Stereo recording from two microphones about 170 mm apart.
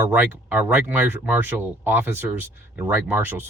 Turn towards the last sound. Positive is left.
turn(degrees=-10)  # may be behind; listen again after turning